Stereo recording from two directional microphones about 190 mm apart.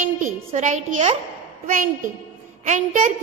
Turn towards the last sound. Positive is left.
turn(degrees=-40)  # may be behind; listen again after turning